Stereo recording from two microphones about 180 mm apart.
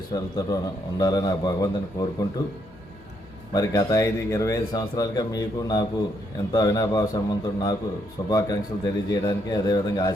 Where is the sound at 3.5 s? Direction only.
20° left (ahead or behind).